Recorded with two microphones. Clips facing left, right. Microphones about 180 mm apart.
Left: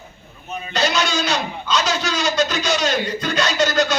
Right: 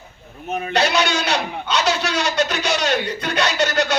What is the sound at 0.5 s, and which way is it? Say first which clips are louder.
A man's voice: right 2 dB; 65° right (ahead or behind).